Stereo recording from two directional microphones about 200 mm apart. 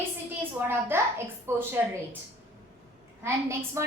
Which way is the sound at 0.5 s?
10° right (ahead or behind).